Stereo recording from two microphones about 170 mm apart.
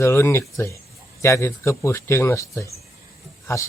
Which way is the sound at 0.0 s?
15° left (ahead or behind).